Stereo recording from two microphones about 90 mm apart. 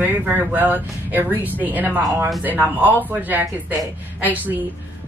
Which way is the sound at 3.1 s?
20° right (ahead or behind).